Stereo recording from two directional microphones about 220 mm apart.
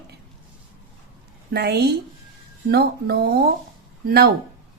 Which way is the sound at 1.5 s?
50° right (ahead or behind).